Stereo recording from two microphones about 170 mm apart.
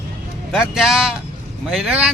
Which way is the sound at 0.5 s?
Centre (ahead or behind).